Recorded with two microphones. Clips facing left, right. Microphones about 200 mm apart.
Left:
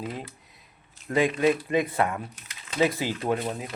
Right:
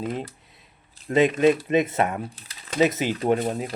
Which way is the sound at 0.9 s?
25° right (ahead or behind).